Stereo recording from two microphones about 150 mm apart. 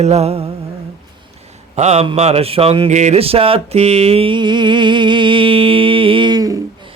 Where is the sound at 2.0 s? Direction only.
45° right (ahead or behind); by 6.6 s 25° right (ahead or behind).